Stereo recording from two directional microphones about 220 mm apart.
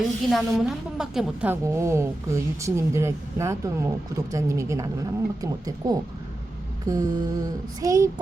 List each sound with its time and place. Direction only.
0.3 s a woman's voice: centre (ahead or behind)